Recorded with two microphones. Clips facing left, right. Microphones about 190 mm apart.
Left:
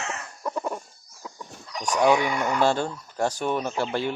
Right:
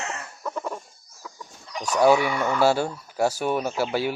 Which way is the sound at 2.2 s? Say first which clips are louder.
Right 1 dB; 15° left (ahead or behind).